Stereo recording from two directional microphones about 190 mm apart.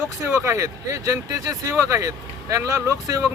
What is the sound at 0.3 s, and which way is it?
Speech, 15° right (ahead or behind).